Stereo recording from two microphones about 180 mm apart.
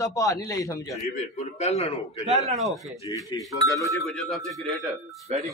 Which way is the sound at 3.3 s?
15° left (ahead or behind).